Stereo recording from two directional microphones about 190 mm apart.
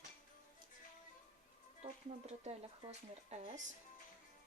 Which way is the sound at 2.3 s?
35° right (ahead or behind).